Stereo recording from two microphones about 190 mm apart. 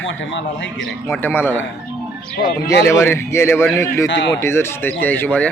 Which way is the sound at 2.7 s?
15° left (ahead or behind).